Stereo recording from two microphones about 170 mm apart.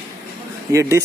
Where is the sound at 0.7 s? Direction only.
15° right (ahead or behind).